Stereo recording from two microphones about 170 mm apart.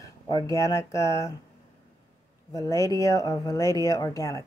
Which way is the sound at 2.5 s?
20° left (ahead or behind).